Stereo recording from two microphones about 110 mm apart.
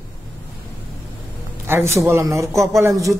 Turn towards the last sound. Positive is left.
turn(degrees=-30)  # may be behind; listen again after turning